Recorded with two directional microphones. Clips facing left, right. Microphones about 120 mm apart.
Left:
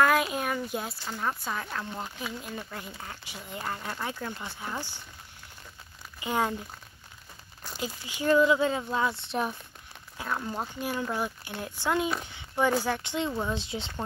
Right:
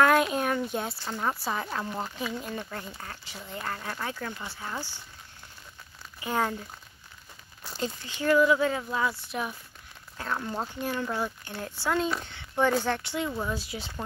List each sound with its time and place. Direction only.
0.0 s a sound: centre (ahead or behind)
1.4 s speech: 5° right (ahead or behind); by 4.9 s 15° left (ahead or behind)
6.2 s speech: 15° left (ahead or behind)
7.6 s speech: centre (ahead or behind)
8.0 s speech: 15° left (ahead or behind)
10.1 s speech: 5° left (ahead or behind)
10.8 s speech: 10° left (ahead or behind)